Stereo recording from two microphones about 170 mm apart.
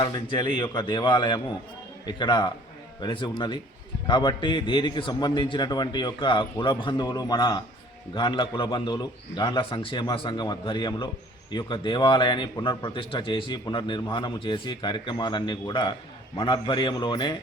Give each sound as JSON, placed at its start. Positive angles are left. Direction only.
{"t": 0.0, "sound": "a man's voice", "side_deg": 30}